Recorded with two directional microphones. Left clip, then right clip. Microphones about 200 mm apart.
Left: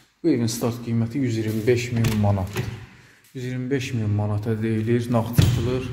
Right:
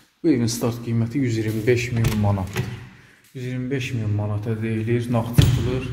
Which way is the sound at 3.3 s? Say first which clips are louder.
Left 1 dB; 30° left (ahead or behind).